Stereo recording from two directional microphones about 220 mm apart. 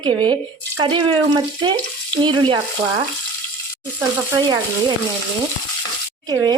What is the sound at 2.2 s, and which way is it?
Speech, 20° right (ahead or behind).